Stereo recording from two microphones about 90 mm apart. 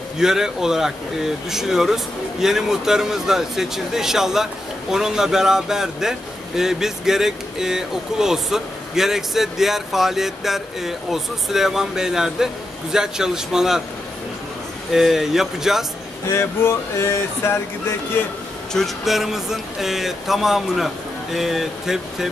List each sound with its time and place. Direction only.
0.2 s a man's voice: 5° right (ahead or behind)
14.9 s a man's voice: 5° right (ahead or behind)
16.3 s speech: 25° left (ahead or behind)
18.7 s a man's voice: centre (ahead or behind)